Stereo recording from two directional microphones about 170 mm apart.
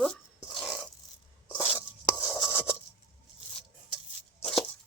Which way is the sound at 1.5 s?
10° left (ahead or behind).